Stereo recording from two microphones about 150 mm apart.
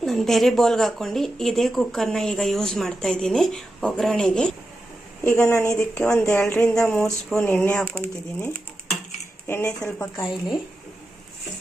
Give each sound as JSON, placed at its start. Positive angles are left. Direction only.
{"t": 0.0, "sound": "speech", "side_deg": 0}
{"t": 5.2, "sound": "speech", "side_deg": 15}
{"t": 6.1, "sound": "speech", "side_deg": 5}
{"t": 6.4, "sound": "speech", "side_deg": 20}
{"t": 6.7, "sound": "speech", "side_deg": 5}